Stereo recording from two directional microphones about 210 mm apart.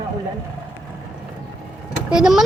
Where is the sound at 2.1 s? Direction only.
5° right (ahead or behind).